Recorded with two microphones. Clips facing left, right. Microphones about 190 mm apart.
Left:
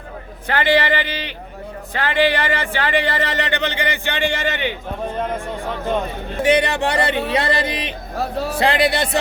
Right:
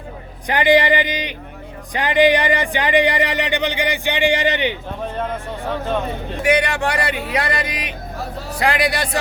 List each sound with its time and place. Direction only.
0.4 s speech: 15° right (ahead or behind)
6.4 s speech: 25° left (ahead or behind)